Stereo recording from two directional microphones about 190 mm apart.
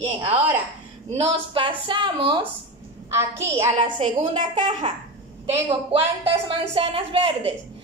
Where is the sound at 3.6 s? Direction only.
30° right (ahead or behind).